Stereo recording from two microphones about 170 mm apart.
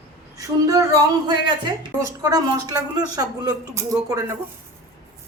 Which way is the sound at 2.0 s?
20° right (ahead or behind).